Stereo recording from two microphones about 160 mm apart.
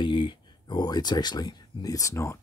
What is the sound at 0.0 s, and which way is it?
Speech, 30° left (ahead or behind).